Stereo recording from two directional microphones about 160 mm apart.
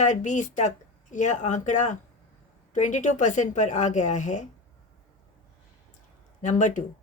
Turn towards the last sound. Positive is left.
turn(degrees=50)  # may be behind; listen again after turning